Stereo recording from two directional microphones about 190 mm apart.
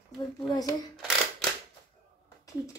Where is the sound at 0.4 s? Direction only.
20° left (ahead or behind).